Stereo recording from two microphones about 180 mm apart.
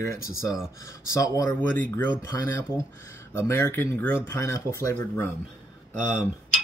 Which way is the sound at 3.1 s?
15° left (ahead or behind).